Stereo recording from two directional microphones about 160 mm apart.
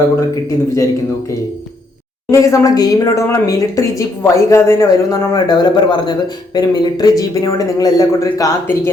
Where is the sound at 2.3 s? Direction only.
20° left (ahead or behind).